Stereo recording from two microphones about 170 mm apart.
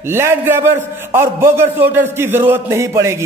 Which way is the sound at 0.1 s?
15° right (ahead or behind).